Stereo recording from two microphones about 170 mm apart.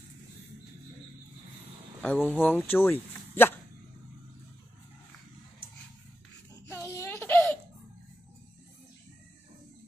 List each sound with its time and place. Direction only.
2.0 s speech: 10° left (ahead or behind)
6.7 s crying: 15° left (ahead or behind)